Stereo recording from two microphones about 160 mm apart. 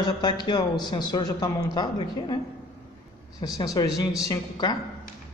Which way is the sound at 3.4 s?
25° left (ahead or behind).